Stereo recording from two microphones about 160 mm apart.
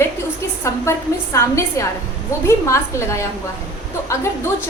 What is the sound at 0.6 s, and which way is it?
A woman's voice, 20° left (ahead or behind).